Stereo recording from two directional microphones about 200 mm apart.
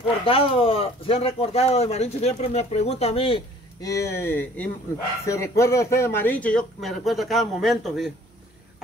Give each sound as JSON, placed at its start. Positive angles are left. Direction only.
{"t": 0.2, "sound": "speech", "side_deg": 25}
{"t": 3.8, "sound": "speech", "side_deg": 15}